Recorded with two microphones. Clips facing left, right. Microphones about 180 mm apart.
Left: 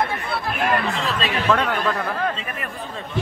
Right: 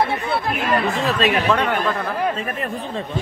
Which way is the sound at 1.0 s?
45° right (ahead or behind).